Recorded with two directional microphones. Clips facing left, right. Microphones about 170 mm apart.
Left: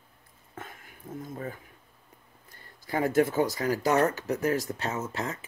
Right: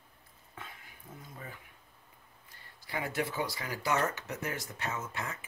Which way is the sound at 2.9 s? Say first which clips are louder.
Left 10 dB; 45° left (ahead or behind).